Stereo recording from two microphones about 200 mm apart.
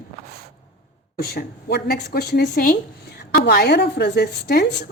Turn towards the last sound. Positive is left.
turn(degrees=55)  # may be behind; listen again after turning